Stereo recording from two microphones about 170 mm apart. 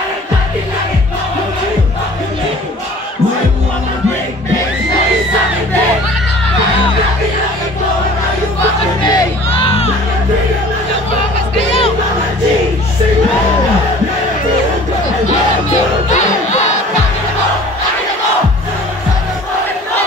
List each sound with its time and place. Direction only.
9.0 s music: 35° left (ahead or behind)